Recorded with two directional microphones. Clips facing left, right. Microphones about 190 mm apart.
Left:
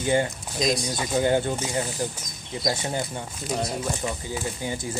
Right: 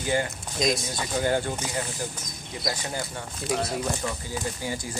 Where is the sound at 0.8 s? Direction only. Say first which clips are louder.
Left 3 dB; 15° left (ahead or behind).